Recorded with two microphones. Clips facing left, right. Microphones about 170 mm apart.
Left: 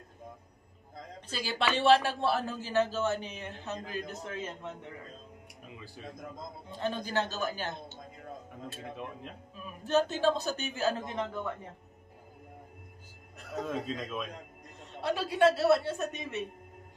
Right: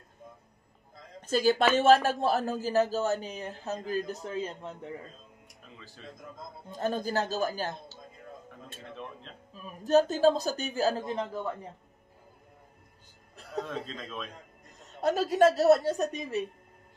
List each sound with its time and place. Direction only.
1.2 s speech: 45° right (ahead or behind)
6.0 s speech: 10° left (ahead or behind)
6.7 s speech: 45° right (ahead or behind)
9.8 s speech: 40° right (ahead or behind)
13.7 s speech: 10° left (ahead or behind)
14.8 s speech: 45° right (ahead or behind)